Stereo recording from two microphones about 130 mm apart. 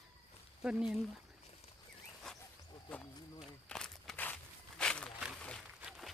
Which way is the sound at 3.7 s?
5° left (ahead or behind).